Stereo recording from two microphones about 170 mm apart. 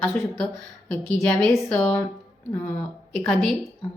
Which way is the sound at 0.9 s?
5° left (ahead or behind).